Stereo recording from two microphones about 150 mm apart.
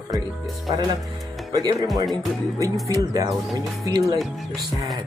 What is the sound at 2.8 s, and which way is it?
Speech, 25° right (ahead or behind).